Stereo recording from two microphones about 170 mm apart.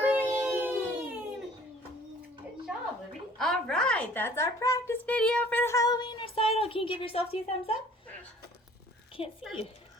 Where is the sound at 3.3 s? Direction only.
Centre (ahead or behind); by 7.4 s 35° left (ahead or behind).